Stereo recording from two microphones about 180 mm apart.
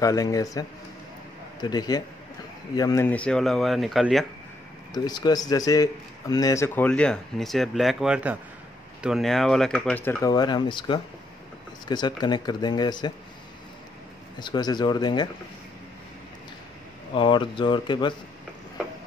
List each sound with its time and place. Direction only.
0.0 s speech: 20° left (ahead or behind); by 4.3 s centre (ahead or behind)
4.9 s a man's voice: 20° left (ahead or behind)
14.4 s speech: 25° left (ahead or behind)
17.1 s speech: 30° left (ahead or behind)